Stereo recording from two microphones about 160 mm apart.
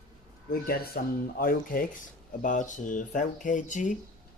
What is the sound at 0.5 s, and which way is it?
Speech, 70° left (ahead or behind).